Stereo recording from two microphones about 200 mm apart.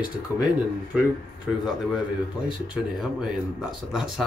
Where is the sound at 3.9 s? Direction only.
Centre (ahead or behind).